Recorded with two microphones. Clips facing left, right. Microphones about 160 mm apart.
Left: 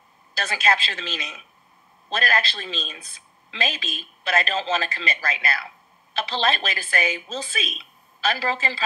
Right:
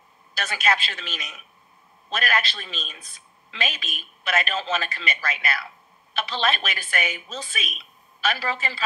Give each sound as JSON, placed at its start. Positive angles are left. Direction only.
{"t": 0.4, "sound": "speech", "side_deg": 30}
{"t": 2.0, "sound": "speech", "side_deg": 35}